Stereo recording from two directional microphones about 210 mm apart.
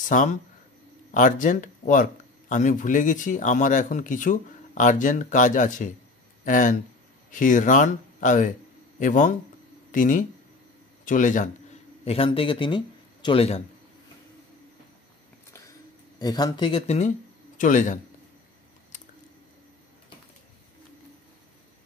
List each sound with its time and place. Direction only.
0.1 s a man's voice: 35° left (ahead or behind)
16.2 s speech: 20° left (ahead or behind); by 17.9 s 35° left (ahead or behind)